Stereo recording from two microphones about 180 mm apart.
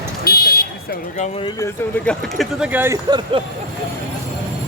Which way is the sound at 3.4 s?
30° right (ahead or behind).